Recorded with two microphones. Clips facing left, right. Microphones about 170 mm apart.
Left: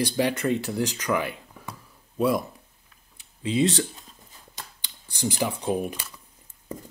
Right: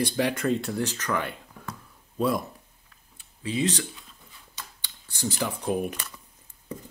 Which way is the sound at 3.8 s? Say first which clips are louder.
Left 6 dB; 40° left (ahead or behind).